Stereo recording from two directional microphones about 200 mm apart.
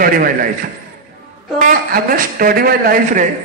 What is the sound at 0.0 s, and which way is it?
Speech, 45° right (ahead or behind).